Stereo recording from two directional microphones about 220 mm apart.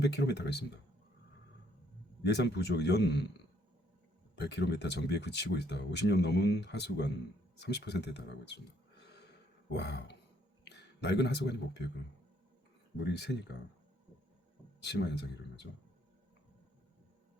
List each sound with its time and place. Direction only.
0.0 s speech: 50° left (ahead or behind)
2.2 s speech: 50° left (ahead or behind)
4.4 s speech: 50° left (ahead or behind)
9.7 s speech: 50° left (ahead or behind)
13.0 s speech: 50° left (ahead or behind)
14.8 s speech: 50° left (ahead or behind)